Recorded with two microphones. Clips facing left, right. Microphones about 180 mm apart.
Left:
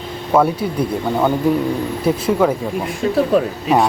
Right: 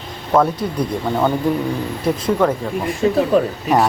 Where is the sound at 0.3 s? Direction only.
5° left (ahead or behind).